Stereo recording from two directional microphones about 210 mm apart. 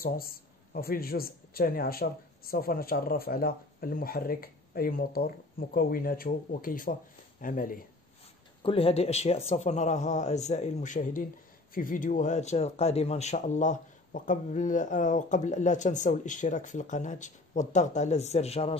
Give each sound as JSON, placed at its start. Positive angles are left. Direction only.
{"t": 0.0, "sound": "speech", "side_deg": 45}
{"t": 8.6, "sound": "speech", "side_deg": 25}